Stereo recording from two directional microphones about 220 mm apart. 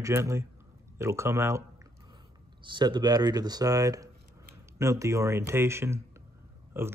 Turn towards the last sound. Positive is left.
turn(degrees=-10)  # may be behind; listen again after turning